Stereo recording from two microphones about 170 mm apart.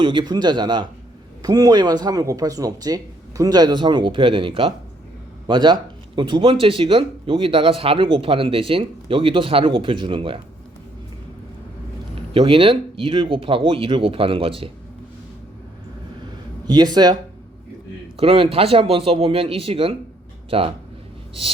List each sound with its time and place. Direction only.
0.0 s speech: 30° right (ahead or behind)
12.3 s speech: 30° right (ahead or behind)
16.6 s speech: 25° right (ahead or behind)
18.2 s speech: 35° right (ahead or behind)